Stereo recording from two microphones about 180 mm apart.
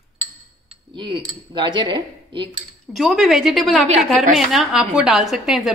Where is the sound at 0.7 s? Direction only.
30° right (ahead or behind).